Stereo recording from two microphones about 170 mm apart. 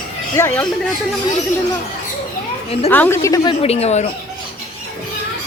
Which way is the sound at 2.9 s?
10° left (ahead or behind).